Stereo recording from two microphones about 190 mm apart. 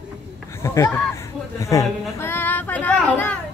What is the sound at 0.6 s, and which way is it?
Speech, 15° left (ahead or behind).